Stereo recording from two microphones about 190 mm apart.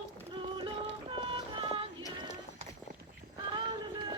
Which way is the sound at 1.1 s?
25° right (ahead or behind).